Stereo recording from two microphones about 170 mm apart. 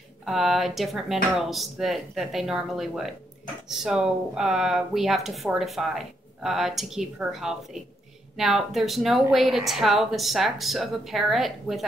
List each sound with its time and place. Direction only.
0.2 s speech: centre (ahead or behind)